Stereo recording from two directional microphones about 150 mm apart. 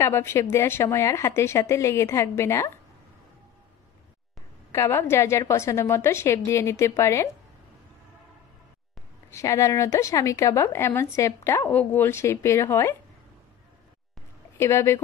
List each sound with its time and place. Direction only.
0.0 s speech: 15° left (ahead or behind)
4.7 s a woman's voice: 20° left (ahead or behind)
9.3 s a woman's voice: 20° left (ahead or behind)
14.6 s speech: 20° left (ahead or behind)